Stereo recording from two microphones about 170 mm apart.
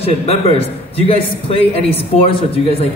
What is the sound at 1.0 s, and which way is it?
Speech, 30° left (ahead or behind).